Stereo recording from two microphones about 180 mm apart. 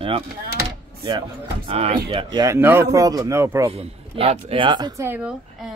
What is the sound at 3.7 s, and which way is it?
Speech, 35° right (ahead or behind).